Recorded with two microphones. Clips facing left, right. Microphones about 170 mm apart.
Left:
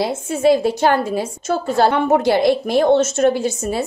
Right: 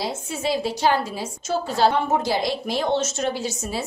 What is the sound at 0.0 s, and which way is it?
A woman's voice, 55° left (ahead or behind).